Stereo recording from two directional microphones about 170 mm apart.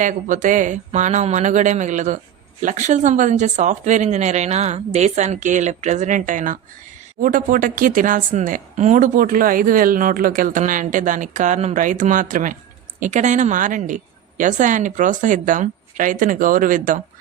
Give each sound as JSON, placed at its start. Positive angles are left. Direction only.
{"t": 0.0, "sound": "a woman's voice", "side_deg": -45}